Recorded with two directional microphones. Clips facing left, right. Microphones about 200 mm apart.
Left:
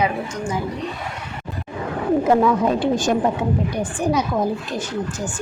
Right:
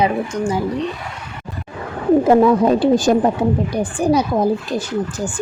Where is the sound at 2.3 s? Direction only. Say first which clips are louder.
Right 4 dB; 30° right (ahead or behind).